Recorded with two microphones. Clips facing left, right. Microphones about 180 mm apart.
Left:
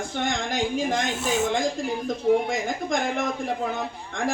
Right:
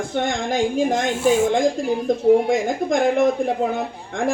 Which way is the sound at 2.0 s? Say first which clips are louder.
Right 6 dB; 55° right (ahead or behind).